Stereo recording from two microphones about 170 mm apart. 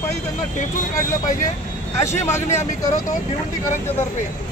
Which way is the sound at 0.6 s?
50° left (ahead or behind).